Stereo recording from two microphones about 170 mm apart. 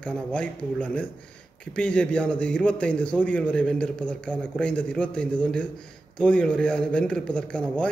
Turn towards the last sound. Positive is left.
turn(degrees=5)  # may be behind; listen again after turning